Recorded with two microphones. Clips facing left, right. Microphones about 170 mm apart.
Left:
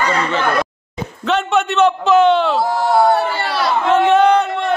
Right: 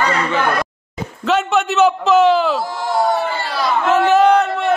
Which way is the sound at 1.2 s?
Centre (ahead or behind).